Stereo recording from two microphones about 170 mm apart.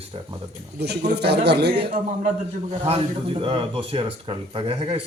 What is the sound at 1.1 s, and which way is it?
Speech, 75° right (ahead or behind).